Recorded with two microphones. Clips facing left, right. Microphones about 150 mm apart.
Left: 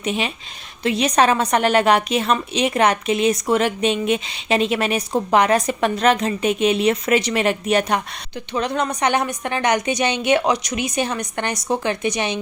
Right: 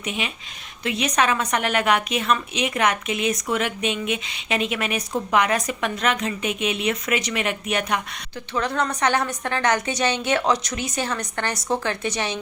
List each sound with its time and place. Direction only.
0.0 s a woman's voice: 35° left (ahead or behind)
8.5 s a woman's voice: 20° left (ahead or behind)